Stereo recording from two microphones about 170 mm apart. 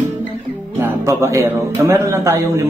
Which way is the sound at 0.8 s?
15° right (ahead or behind).